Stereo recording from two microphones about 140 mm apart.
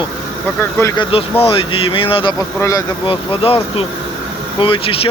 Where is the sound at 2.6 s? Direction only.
25° left (ahead or behind).